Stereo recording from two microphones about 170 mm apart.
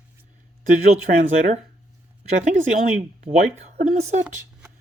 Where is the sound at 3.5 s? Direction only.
40° right (ahead or behind).